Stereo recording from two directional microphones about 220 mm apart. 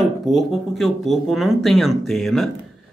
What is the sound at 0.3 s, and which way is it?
Speech, centre (ahead or behind).